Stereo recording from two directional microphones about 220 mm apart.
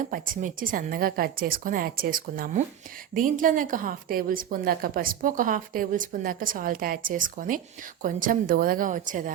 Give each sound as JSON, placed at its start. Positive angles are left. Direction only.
{"t": 0.0, "sound": "a woman's voice", "side_deg": -35}